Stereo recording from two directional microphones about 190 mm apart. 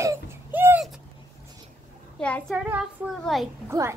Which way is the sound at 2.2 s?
5° left (ahead or behind).